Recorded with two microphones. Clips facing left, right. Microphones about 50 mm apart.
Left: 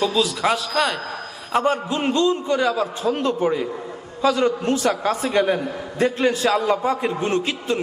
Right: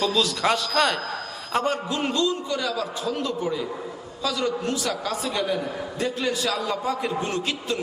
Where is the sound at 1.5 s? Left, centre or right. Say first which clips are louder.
Left 4 dB; left.